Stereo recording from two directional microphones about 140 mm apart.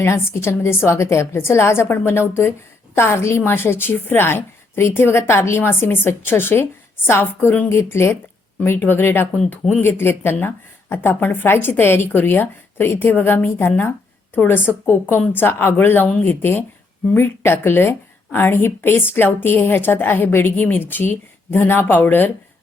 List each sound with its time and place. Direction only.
0.0 s a woman's voice: 20° left (ahead or behind)